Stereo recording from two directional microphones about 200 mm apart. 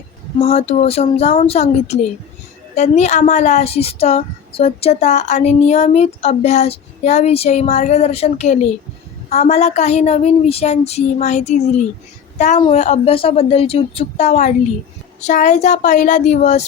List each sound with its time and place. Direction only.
0.3 s speech: 30° left (ahead or behind)